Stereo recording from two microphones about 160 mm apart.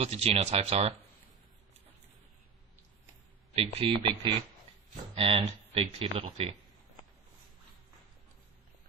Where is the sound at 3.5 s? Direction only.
35° right (ahead or behind).